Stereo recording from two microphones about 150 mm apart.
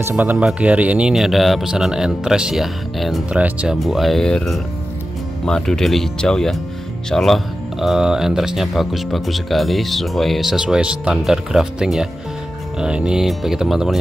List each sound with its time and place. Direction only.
0.0 s speech: 10° right (ahead or behind)